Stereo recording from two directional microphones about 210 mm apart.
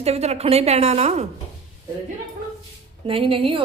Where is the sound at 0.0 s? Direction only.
30° right (ahead or behind).